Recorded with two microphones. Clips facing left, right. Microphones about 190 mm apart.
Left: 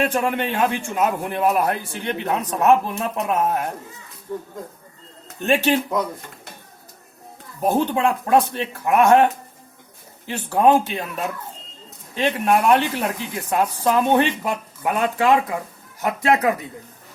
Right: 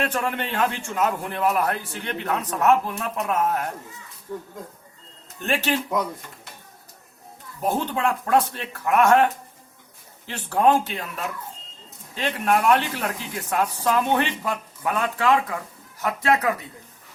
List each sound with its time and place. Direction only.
0.0 s a man's voice: 15° left (ahead or behind)
5.5 s a man's voice: 15° left (ahead or behind)
7.6 s a woman's voice: 20° left (ahead or behind)